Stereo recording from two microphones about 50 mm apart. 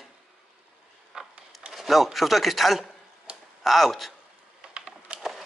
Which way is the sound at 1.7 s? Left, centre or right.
Centre.